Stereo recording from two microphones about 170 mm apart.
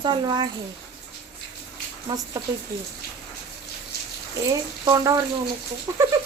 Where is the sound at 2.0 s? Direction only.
20° right (ahead or behind).